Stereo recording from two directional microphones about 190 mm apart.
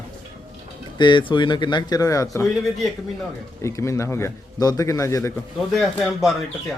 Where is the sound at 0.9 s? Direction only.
25° left (ahead or behind).